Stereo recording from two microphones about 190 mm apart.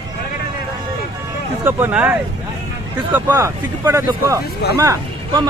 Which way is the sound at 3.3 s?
15° right (ahead or behind).